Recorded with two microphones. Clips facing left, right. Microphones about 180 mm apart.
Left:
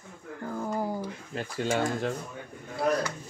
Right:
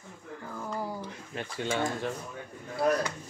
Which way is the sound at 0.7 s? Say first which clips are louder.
Left 3 dB; 20° left (ahead or behind).